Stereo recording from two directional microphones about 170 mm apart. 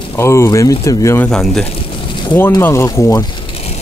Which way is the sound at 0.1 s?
15° left (ahead or behind).